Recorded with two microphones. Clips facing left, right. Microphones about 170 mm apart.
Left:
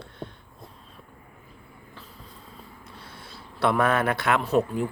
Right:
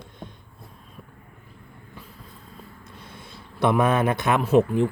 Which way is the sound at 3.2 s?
15° right (ahead or behind).